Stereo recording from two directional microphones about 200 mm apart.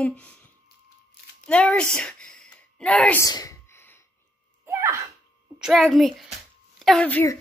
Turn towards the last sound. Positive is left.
turn(degrees=10)  # may be behind; listen again after turning